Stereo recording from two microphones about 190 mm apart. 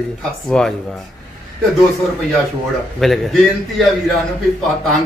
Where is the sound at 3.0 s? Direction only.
Centre (ahead or behind).